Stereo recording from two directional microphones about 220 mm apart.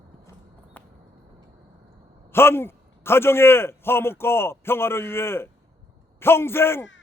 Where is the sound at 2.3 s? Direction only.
10° left (ahead or behind).